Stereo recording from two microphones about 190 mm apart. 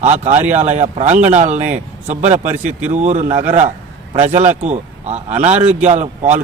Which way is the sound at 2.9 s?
35° right (ahead or behind).